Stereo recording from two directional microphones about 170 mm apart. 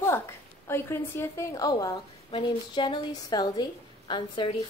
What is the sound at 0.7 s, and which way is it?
Speech, 15° left (ahead or behind).